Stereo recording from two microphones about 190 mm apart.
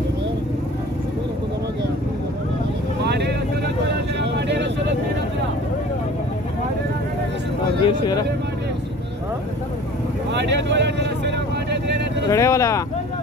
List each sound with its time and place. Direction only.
3.0 s vehicle: 60° right (ahead or behind)
7.8 s a sound: 25° left (ahead or behind)
10.3 s vehicle: 65° right (ahead or behind)
12.3 s vehicle: 15° left (ahead or behind)